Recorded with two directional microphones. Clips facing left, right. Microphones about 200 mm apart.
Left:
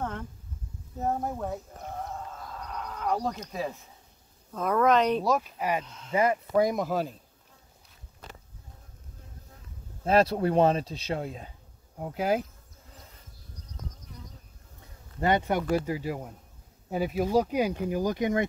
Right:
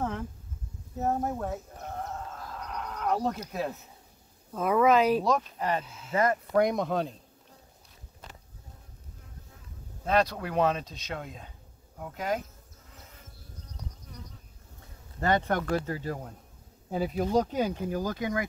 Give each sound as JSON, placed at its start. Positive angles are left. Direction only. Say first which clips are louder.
{"t": 0.0, "sound": "a sound", "louder": "right 2 dB", "side_deg": -5}
{"t": 0.9, "sound": "sheep", "louder": "right 1 dB", "side_deg": 0}
{"t": 4.5, "sound": "speech", "louder": "right 1 dB", "side_deg": -5}
{"t": 5.9, "sound": "speech", "louder": "even", "side_deg": -5}
{"t": 6.1, "sound": "speech", "louder": "left 1 dB", "side_deg": 10}
{"t": 10.1, "sound": "speech", "louder": "left 4 dB", "side_deg": 30}
{"t": 15.1, "sound": "speech", "louder": "left 1 dB", "side_deg": 15}